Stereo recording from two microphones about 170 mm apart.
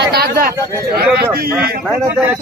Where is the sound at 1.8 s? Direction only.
5° right (ahead or behind).